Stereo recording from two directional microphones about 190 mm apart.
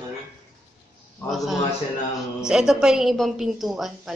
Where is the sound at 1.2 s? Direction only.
Centre (ahead or behind).